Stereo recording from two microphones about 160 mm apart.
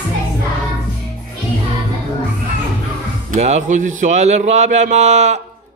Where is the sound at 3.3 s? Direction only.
50° right (ahead or behind).